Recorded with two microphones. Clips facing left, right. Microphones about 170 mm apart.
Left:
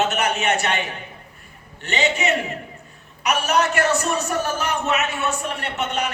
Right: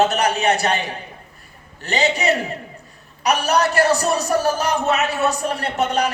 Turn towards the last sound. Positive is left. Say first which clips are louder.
# right 5 dB
turn(degrees=-35)  # may be behind; listen again after turning